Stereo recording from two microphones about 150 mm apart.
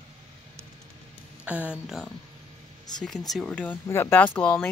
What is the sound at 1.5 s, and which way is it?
Speech, 10° right (ahead or behind).